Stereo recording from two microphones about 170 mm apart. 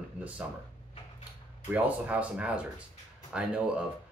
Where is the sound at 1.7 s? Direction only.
10° right (ahead or behind).